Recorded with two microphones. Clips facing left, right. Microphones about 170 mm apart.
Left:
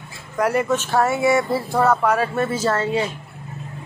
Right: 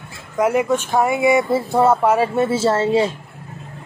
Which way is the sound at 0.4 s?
15° right (ahead or behind).